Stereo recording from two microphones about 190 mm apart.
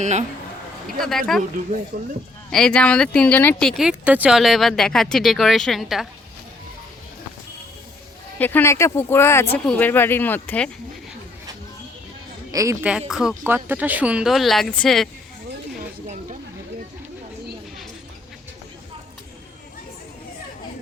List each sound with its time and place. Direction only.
0.0 s a man's voice: 40° right (ahead or behind)
0.9 s speech: centre (ahead or behind)
1.9 s speech: 50° right (ahead or behind)
2.5 s speech: 5° left (ahead or behind)
8.4 s speech: 10° left (ahead or behind)
12.5 s a woman's voice: 15° right (ahead or behind)
12.8 s speech: 5° right (ahead or behind)